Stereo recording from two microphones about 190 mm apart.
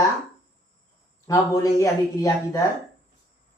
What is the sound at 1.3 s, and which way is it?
Speech, 15° left (ahead or behind).